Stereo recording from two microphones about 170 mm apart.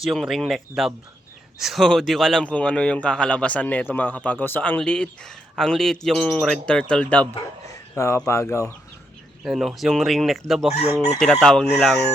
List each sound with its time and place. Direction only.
0.0 s a man's voice: centre (ahead or behind)
7.7 s a sound: 15° left (ahead or behind)
8.3 s speech: 15° left (ahead or behind)
9.4 s a man's voice: centre (ahead or behind)
10.7 s chicken: 40° left (ahead or behind)
11.2 s a man's voice: 5° left (ahead or behind)